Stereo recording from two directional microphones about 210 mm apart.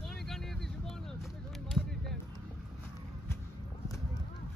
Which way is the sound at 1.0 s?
Centre (ahead or behind).